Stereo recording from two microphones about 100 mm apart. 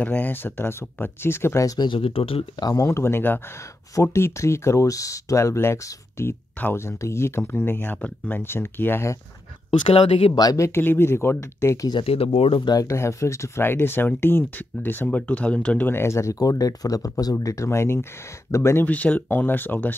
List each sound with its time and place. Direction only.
0.0 s speech: 15° left (ahead or behind)
1.8 s speech: 60° left (ahead or behind)
2.6 s speech: 30° left (ahead or behind)
9.7 s speech: 90° left
10.3 s speech: 40° left (ahead or behind)
10.7 s speech: 20° left (ahead or behind)
12.0 s speech: 70° left (ahead or behind)
12.5 s speech: 45° left (ahead or behind)
12.8 s speech: 30° left (ahead or behind); by 15.9 s 10° left (ahead or behind)
15.9 s speech: 25° left (ahead or behind)
18.9 s speech: 15° left (ahead or behind)